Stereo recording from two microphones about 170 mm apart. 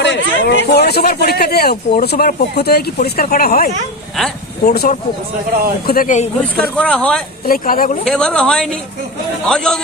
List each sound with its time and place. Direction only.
0.0 s a man's voice: 90° left; by 6.2 s 55° left (ahead or behind)
6.6 s speech: 5° left (ahead or behind)
7.4 s speech: 55° left (ahead or behind)
8.0 s a woman's voice: 5° left (ahead or behind)